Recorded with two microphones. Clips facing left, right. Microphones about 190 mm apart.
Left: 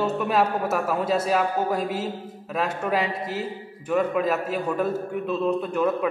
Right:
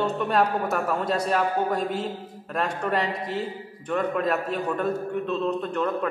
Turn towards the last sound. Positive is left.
turn(degrees=10)  # may be behind; listen again after turning